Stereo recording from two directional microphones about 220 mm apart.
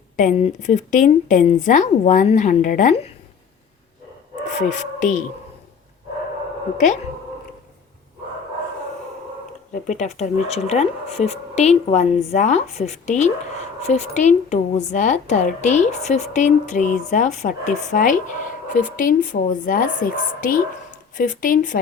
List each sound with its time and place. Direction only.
0.2 s a woman's voice: 35° left (ahead or behind)
4.5 s a woman's voice: 35° left (ahead or behind)
6.7 s a woman's voice: 35° left (ahead or behind)
9.7 s a woman's voice: 35° left (ahead or behind)